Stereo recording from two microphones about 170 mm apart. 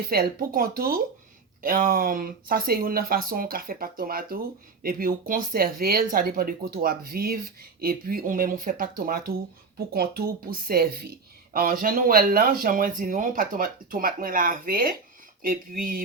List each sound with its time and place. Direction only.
0.1 s speech: 60° right (ahead or behind)